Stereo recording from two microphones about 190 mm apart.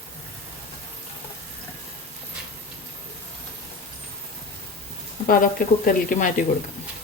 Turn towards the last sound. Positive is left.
turn(degrees=45)  # may be behind; listen again after turning